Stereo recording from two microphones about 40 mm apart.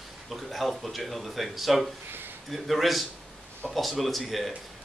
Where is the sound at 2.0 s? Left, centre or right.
Right.